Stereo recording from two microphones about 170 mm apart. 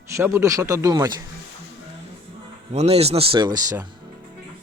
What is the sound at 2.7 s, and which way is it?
Speech, 40° right (ahead or behind).